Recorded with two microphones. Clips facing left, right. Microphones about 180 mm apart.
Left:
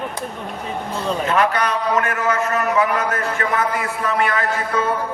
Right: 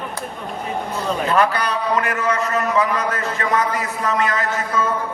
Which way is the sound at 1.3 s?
35° right (ahead or behind).